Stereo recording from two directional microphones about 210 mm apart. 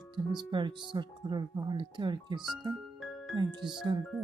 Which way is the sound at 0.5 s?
20° right (ahead or behind).